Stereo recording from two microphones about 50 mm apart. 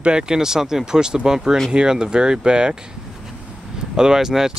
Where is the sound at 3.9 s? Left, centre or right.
Centre.